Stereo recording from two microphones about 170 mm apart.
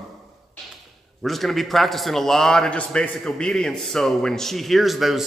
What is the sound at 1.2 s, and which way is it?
A man's voice, centre (ahead or behind).